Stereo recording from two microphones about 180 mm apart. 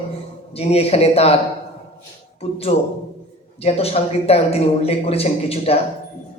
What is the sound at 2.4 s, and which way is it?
Speech, 35° left (ahead or behind).